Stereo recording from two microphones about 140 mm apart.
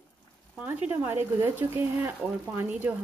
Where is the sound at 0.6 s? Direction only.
10° right (ahead or behind).